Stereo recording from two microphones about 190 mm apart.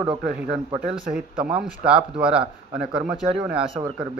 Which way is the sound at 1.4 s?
5° right (ahead or behind).